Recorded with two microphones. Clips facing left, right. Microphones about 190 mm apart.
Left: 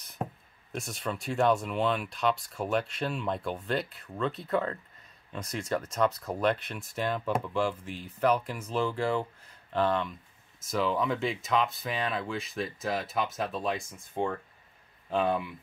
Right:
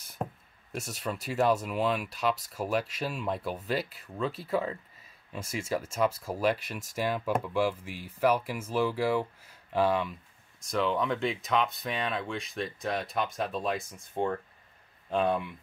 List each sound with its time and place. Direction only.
0.7 s speech: 5° right (ahead or behind)